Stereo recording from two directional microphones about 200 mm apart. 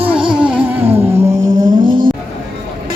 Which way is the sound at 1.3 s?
40° right (ahead or behind).